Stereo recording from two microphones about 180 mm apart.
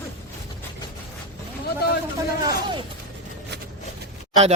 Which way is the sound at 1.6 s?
60° left (ahead or behind).